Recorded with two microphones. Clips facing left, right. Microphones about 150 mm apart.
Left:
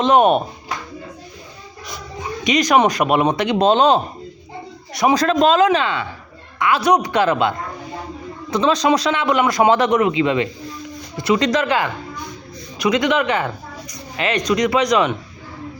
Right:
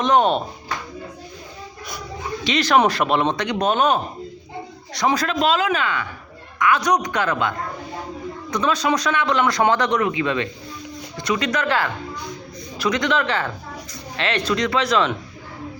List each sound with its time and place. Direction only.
0.0 s speech: 25° left (ahead or behind)
2.5 s speech: 15° left (ahead or behind)
3.3 s speech: 25° left (ahead or behind)
5.1 s a man's voice: 40° left (ahead or behind); by 10.5 s 15° left (ahead or behind)
11.2 s speech: 30° left (ahead or behind)
11.6 s speech: 15° left (ahead or behind)